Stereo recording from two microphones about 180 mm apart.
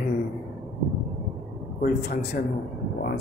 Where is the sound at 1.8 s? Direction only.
55° left (ahead or behind).